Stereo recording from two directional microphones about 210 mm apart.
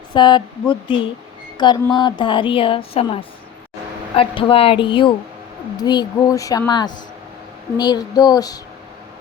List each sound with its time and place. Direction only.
0.1 s a woman's voice: 20° left (ahead or behind)